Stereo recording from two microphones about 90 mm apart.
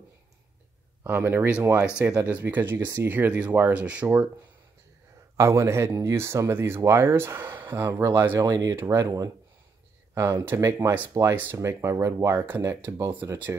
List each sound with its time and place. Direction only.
1.0 s speech: 20° right (ahead or behind)
5.4 s speech: 35° right (ahead or behind)
10.1 s speech: 25° right (ahead or behind)